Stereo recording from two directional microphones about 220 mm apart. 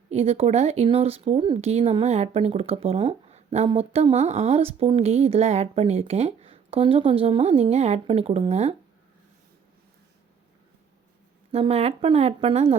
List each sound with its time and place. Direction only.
0.1 s speech: 30° right (ahead or behind)
11.5 s speech: 25° right (ahead or behind)